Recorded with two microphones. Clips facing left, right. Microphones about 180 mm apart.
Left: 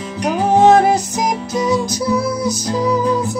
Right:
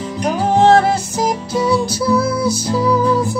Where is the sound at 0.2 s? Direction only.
15° left (ahead or behind).